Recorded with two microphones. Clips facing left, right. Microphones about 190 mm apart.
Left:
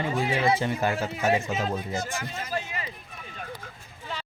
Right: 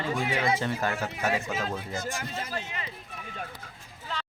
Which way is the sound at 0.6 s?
15° left (ahead or behind).